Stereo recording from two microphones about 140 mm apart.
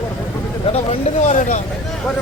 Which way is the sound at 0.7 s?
50° left (ahead or behind).